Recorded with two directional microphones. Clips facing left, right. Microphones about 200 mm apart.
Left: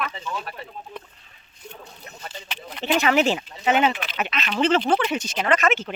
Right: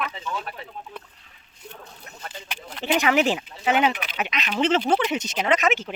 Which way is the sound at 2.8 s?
15° right (ahead or behind).